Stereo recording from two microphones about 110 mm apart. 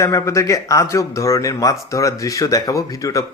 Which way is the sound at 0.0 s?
30° left (ahead or behind).